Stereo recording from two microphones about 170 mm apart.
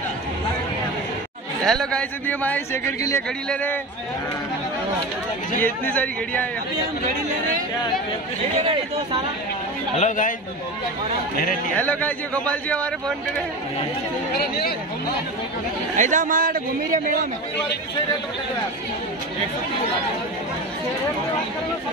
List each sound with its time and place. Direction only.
1.7 s speech: 5° left (ahead or behind)
5.6 s speech: 10° left (ahead or behind)
9.9 s speech: 45° left (ahead or behind)
11.7 s speech: 10° left (ahead or behind)
14.3 s speech: 65° left (ahead or behind)
16.0 s a man's voice: 50° right (ahead or behind)